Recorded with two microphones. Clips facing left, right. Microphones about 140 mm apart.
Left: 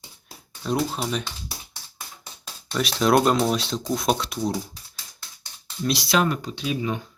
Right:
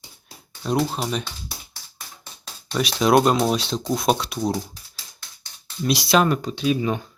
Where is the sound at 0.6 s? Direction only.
5° right (ahead or behind).